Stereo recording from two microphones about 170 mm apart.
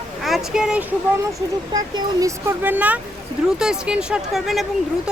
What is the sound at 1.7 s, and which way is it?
Speech, 20° right (ahead or behind).